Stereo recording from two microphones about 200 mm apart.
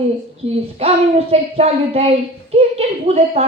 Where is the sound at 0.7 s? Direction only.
30° right (ahead or behind).